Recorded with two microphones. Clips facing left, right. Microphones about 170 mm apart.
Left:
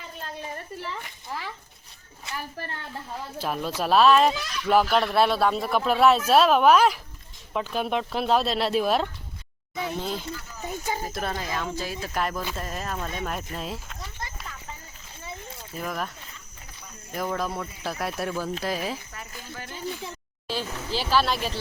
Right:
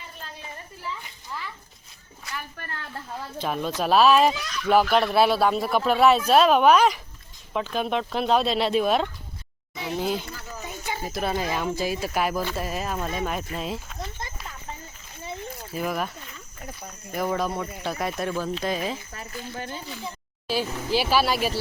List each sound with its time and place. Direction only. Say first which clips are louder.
1.3 s a child's voice: left 1 dB; 85° left
2.3 s speech: left 2 dB; 30° left (ahead or behind)
2.9 s speech: even; 5° left (ahead or behind)
10.6 s a sound: left 3 dB; 45° left (ahead or behind)
11.1 s speech: right 3 dB; 5° right (ahead or behind)
11.3 s speech: right 4 dB; 15° right (ahead or behind)
15.7 s speech: right 4 dB; 5° right (ahead or behind)
17.2 s speech: right 3 dB; centre (ahead or behind)
19.1 s speech: right 4 dB; 30° right (ahead or behind)
20.5 s speech: right 5 dB; 10° right (ahead or behind)